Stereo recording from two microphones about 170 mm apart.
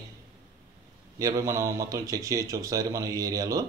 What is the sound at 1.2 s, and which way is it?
Speech, 20° right (ahead or behind).